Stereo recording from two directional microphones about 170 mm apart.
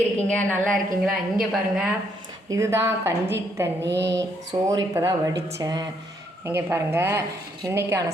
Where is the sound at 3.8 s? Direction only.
90° right.